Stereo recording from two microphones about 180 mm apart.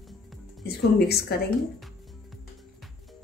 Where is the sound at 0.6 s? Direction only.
65° left (ahead or behind).